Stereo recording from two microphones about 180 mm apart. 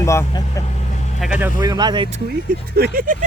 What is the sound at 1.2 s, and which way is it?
Speech, 10° right (ahead or behind).